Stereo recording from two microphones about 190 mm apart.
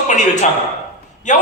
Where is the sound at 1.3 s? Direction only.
40° left (ahead or behind).